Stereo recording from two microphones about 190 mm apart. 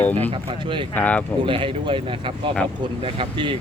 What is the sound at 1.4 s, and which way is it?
Speech, 25° right (ahead or behind).